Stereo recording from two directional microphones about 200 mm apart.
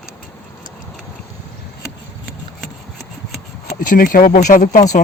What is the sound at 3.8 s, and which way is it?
Speech, 45° left (ahead or behind).